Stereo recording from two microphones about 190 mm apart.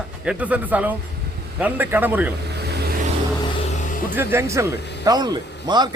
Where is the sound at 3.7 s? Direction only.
40° left (ahead or behind).